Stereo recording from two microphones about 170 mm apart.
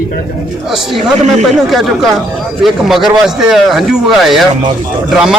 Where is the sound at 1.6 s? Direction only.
Centre (ahead or behind).